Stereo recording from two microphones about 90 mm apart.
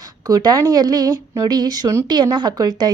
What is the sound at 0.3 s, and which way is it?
A woman's voice, 45° right (ahead or behind).